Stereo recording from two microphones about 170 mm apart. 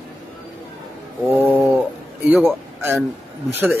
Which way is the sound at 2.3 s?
10° right (ahead or behind).